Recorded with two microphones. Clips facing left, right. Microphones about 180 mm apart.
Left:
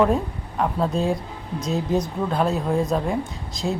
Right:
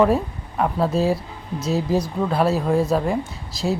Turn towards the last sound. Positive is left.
turn(degrees=-5)  # may be behind; listen again after turning